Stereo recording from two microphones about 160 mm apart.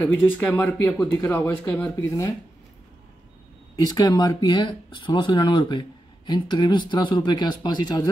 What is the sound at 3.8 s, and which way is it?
Speech, 25° left (ahead or behind).